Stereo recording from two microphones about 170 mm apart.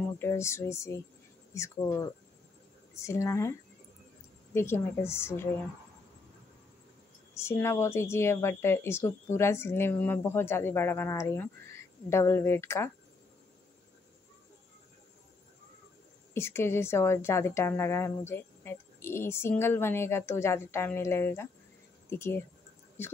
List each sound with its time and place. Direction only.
0.2 s speech: 15° left (ahead or behind)
2.9 s speech: 15° left (ahead or behind)
4.6 s speech: 15° left (ahead or behind)
7.3 s speech: 15° left (ahead or behind)
16.3 s speech: 15° left (ahead or behind)